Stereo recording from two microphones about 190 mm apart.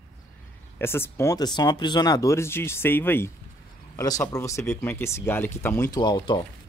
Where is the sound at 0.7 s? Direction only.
10° left (ahead or behind).